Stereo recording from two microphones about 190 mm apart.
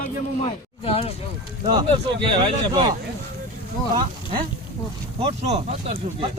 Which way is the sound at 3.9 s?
25° right (ahead or behind).